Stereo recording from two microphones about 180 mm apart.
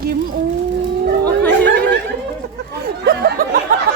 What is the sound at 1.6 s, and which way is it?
Snicker, 75° right (ahead or behind).